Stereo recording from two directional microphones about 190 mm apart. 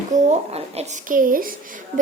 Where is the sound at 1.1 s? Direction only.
45° right (ahead or behind).